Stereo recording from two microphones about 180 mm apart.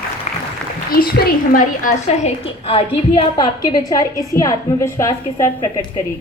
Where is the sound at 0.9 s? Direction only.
55° left (ahead or behind); by 5.5 s 15° left (ahead or behind).